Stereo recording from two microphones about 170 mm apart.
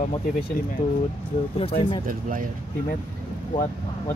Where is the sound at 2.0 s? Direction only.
55° right (ahead or behind).